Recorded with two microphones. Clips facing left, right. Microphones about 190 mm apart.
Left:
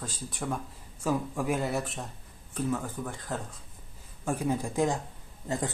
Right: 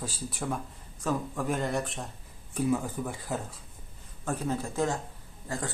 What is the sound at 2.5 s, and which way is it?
A man's voice, 10° right (ahead or behind).